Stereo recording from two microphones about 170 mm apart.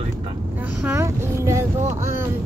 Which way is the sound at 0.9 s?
15° right (ahead or behind).